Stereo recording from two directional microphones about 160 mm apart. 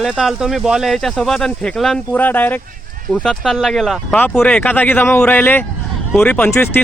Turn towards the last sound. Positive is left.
turn(degrees=15)  # may be behind; listen again after turning